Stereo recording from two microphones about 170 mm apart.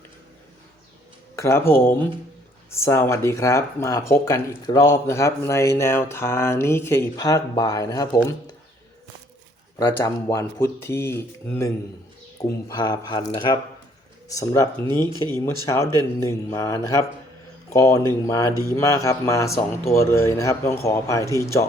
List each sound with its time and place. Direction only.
1.4 s speech: 15° left (ahead or behind)
9.7 s speech: 15° left (ahead or behind)